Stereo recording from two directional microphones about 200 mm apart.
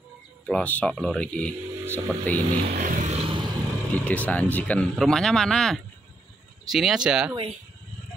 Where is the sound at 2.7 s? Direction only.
40° right (ahead or behind).